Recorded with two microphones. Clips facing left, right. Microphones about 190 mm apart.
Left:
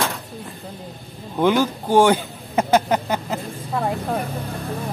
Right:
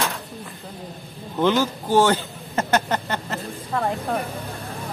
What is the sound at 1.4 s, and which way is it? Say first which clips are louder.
A man's voice: left 2 dB; 15° left (ahead or behind).